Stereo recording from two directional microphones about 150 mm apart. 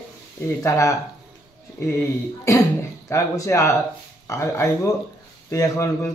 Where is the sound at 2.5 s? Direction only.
20° left (ahead or behind).